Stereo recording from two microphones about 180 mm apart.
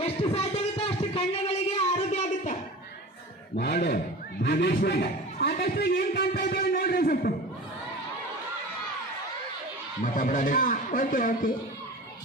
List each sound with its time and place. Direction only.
0.0 s a sound: 35° left (ahead or behind)
3.6 s a man's voice: 60° left (ahead or behind)
10.0 s a man's voice: 45° left (ahead or behind)